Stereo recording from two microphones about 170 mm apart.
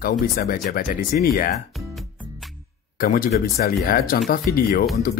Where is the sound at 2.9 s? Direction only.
55° left (ahead or behind).